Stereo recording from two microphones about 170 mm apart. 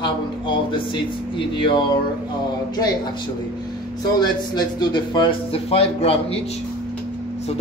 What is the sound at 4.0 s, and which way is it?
Speech, 25° left (ahead or behind).